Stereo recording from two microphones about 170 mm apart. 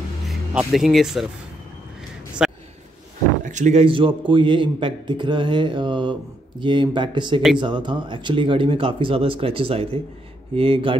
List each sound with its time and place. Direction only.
0.3 s speech: centre (ahead or behind)
2.4 s a sound: 5° right (ahead or behind)
3.4 s a man's voice: 45° right (ahead or behind)